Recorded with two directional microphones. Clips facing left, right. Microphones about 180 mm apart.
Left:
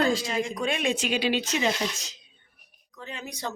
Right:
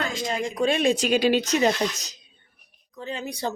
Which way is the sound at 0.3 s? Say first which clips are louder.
Right 4 dB; 35° right (ahead or behind).